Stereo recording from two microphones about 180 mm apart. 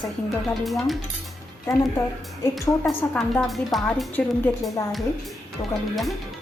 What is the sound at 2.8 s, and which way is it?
Speech, centre (ahead or behind).